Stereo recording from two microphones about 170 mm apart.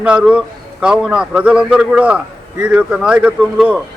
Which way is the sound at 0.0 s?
5° right (ahead or behind).